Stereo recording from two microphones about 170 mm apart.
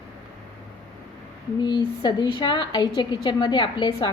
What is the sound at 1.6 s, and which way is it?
A woman's voice, 25° left (ahead or behind).